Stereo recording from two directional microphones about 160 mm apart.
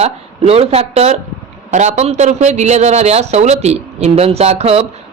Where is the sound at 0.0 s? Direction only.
40° right (ahead or behind).